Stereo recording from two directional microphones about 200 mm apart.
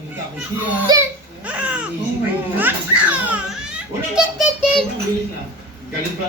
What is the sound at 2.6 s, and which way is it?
Children playing, 10° right (ahead or behind).